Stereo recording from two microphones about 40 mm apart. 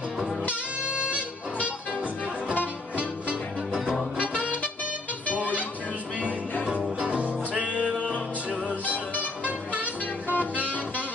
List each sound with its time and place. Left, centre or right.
0.5 s music: right
7.0 s music: right
8.9 s music: right